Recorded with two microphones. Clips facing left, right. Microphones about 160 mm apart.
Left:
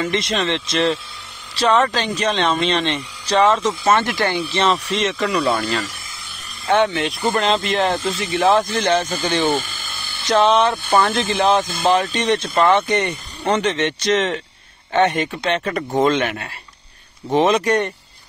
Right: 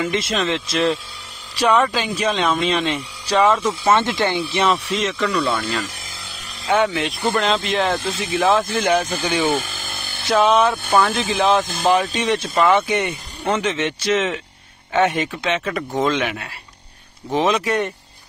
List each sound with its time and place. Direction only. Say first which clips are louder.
0.0 s speech: even; 5° right (ahead or behind)
3.9 s speech: right 1 dB; 20° right (ahead or behind)
4.6 s speech: left 2 dB; centre (ahead or behind)
6.7 s speech: left 1 dB; 5° right (ahead or behind)
9.7 s a sound: right 2 dB; 45° right (ahead or behind)
10.3 s speech: even; 10° right (ahead or behind)